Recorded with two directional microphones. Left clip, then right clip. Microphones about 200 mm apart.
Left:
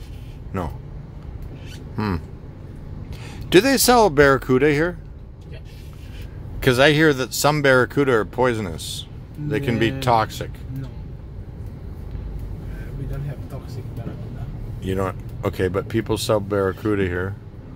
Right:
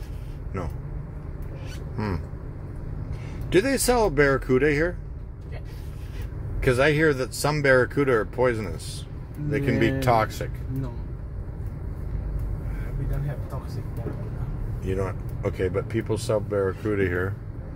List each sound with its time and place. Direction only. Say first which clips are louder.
0.5 s speech: left 6 dB; 30° left (ahead or behind)
2.0 s cat: left 5 dB; 30° left (ahead or behind)
3.4 s speech: left 6 dB; 35° left (ahead or behind)
6.6 s speech: left 5 dB; 30° left (ahead or behind); by 10.5 s 15° left (ahead or behind)
14.9 s speech: left 4 dB; 35° left (ahead or behind); by 17.3 s 15° left (ahead or behind)